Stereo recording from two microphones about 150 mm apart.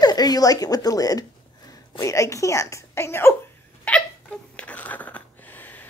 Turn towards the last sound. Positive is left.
turn(degrees=10)  # may be behind; listen again after turning